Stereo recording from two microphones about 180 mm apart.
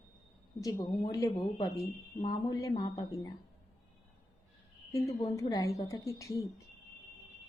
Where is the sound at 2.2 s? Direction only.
20° left (ahead or behind).